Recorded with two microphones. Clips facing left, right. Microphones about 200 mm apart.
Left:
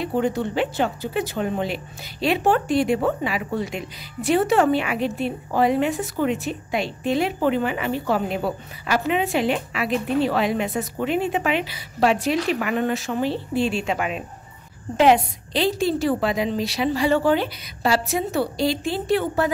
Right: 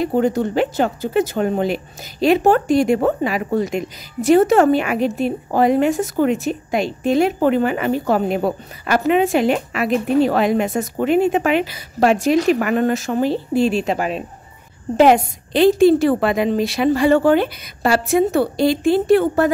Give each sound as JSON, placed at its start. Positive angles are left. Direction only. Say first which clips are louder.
{"t": 0.0, "sound": "speech", "louder": "right 5 dB", "side_deg": -45}
{"t": 15.0, "sound": "speech", "louder": "right 4 dB", "side_deg": -50}